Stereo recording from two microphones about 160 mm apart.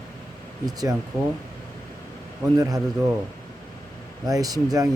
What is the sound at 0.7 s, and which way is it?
Speech, 25° right (ahead or behind).